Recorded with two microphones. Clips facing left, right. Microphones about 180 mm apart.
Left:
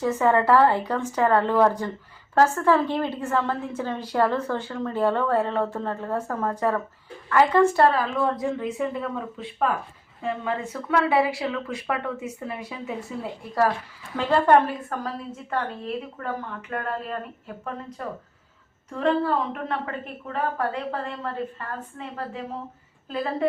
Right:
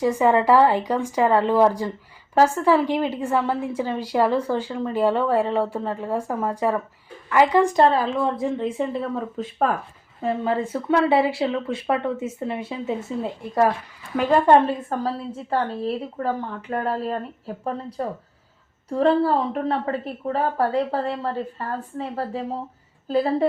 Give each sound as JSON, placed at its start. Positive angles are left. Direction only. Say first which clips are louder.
{"t": 0.0, "sound": "a woman's voice", "louder": "right 2 dB", "side_deg": -10}
{"t": 14.2, "sound": "a woman's voice", "louder": "right 3 dB", "side_deg": -15}